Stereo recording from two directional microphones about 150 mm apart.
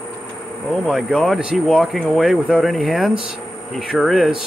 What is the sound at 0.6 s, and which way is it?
Speech, 5° left (ahead or behind).